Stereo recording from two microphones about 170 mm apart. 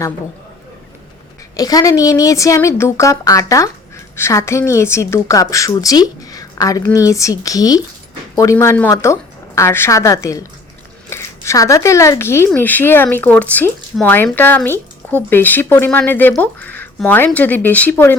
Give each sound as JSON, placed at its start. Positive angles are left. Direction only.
{"t": 1.5, "sound": "a woman's voice", "side_deg": 20}